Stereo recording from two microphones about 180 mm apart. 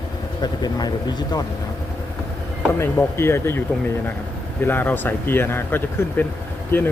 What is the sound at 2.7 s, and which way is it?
Speech, 15° left (ahead or behind).